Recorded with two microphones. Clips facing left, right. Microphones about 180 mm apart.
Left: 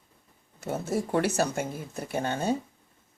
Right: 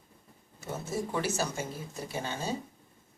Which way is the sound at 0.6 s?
65° left (ahead or behind).